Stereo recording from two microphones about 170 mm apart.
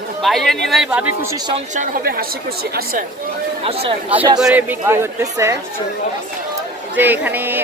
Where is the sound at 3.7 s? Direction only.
35° right (ahead or behind).